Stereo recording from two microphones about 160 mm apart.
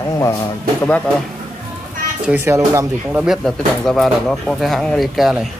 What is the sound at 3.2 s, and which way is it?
Speech, centre (ahead or behind).